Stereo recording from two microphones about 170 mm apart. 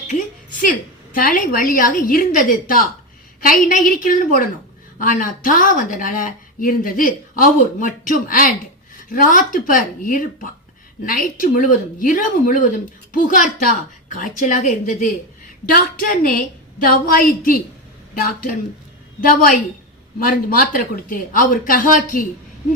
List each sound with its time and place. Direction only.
0.6 s a woman's voice: 55° left (ahead or behind)
15.7 s a woman's voice: 55° left (ahead or behind)